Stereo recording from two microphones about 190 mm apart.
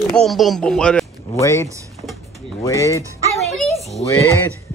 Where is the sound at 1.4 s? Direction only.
15° left (ahead or behind).